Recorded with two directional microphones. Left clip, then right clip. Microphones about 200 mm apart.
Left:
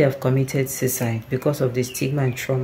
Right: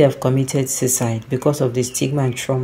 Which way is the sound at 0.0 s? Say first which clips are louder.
Right 4 dB; 15° right (ahead or behind).